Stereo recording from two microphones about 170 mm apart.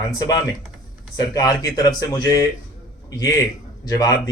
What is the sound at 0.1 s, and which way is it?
Speech, 20° left (ahead or behind).